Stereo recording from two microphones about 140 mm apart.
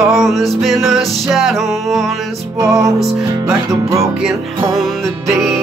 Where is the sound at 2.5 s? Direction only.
20° right (ahead or behind).